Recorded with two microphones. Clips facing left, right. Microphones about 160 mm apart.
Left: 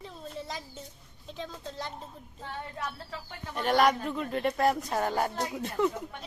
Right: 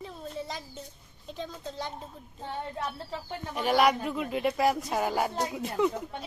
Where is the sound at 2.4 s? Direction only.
25° right (ahead or behind).